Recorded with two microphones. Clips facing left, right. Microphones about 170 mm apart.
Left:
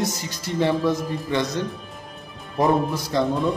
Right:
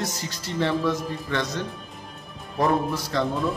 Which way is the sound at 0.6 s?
15° left (ahead or behind).